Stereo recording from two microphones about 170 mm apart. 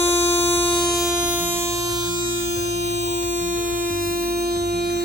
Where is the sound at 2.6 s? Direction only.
40° right (ahead or behind).